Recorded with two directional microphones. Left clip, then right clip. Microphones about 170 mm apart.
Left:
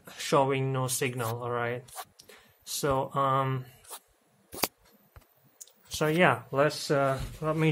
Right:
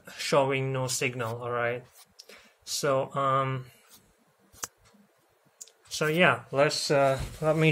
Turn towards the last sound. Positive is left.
turn(degrees=-15)  # may be behind; listen again after turning